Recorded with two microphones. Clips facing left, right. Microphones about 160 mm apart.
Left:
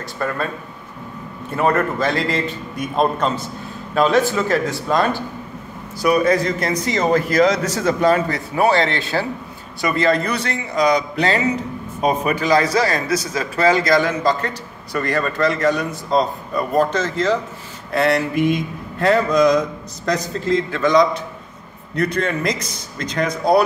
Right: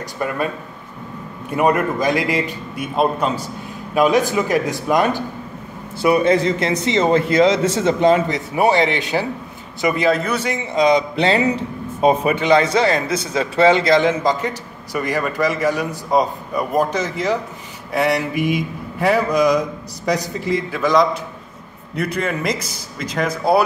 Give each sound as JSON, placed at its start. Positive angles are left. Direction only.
{"t": 0.2, "sound": "a man's voice", "side_deg": -15}
{"t": 1.5, "sound": "a man's voice", "side_deg": -15}
{"t": 5.9, "sound": "a man's voice", "side_deg": -25}
{"t": 10.0, "sound": "a man's voice", "side_deg": -5}
{"t": 10.7, "sound": "a man's voice", "side_deg": -25}